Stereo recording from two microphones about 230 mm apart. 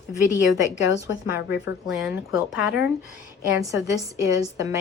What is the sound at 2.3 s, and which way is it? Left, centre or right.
Speech, left.